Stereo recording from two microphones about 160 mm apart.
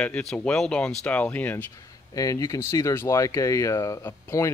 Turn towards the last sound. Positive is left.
turn(degrees=20)  # may be behind; listen again after turning